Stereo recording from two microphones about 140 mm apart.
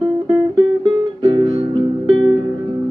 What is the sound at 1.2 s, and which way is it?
Music, 35° right (ahead or behind).